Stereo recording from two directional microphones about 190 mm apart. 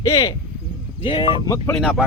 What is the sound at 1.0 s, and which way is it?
Speech, 25° left (ahead or behind).